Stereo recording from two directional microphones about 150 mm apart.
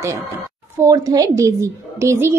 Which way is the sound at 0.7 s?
20° right (ahead or behind).